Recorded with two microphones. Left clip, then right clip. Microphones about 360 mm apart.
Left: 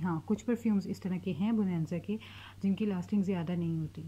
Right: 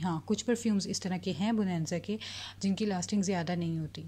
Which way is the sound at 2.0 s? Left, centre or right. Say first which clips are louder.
Right 3 dB; right.